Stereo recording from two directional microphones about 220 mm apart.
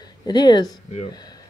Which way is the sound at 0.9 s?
30° left (ahead or behind).